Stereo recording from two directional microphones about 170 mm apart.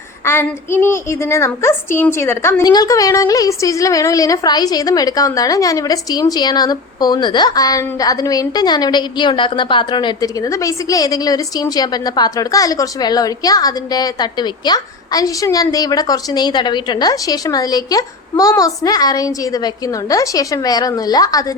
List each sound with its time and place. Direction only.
0.3 s a child's voice: 15° left (ahead or behind)